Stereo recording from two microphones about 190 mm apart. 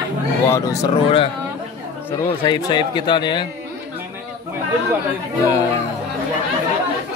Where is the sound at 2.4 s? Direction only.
25° left (ahead or behind).